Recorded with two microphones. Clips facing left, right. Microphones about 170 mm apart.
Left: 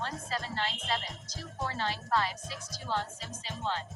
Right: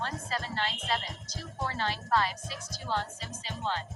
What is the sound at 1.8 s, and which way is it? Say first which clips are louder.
Speech: right 2 dB; 65° right (ahead or behind).